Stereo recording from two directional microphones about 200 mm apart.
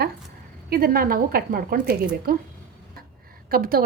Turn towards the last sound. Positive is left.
turn(degrees=-45)  # may be behind; listen again after turning